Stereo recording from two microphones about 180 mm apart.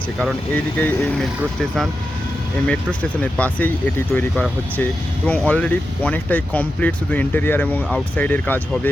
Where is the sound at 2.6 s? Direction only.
5° left (ahead or behind).